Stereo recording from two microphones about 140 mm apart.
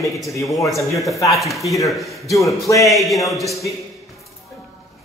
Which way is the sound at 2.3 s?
25° left (ahead or behind).